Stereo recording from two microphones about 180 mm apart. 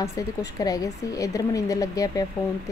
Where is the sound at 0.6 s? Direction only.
20° left (ahead or behind).